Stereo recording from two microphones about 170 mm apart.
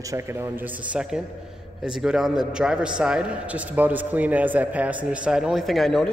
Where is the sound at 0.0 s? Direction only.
15° right (ahead or behind).